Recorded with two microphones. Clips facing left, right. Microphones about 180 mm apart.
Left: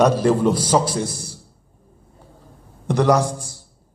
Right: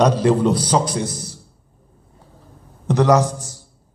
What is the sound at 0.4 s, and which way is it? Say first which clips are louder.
Speech: even; 10° left (ahead or behind).